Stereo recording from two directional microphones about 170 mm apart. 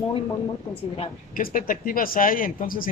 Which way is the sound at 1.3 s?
55° left (ahead or behind).